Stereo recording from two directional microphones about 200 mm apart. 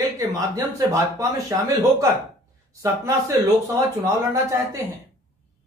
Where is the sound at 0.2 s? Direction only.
15° right (ahead or behind).